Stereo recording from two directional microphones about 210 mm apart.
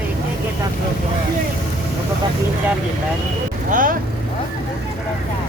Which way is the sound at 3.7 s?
40° right (ahead or behind).